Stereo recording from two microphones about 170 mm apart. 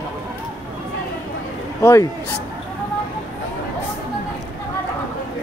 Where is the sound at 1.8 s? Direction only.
15° left (ahead or behind).